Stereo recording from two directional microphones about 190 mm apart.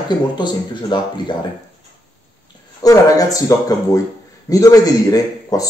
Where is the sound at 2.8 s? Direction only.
20° left (ahead or behind).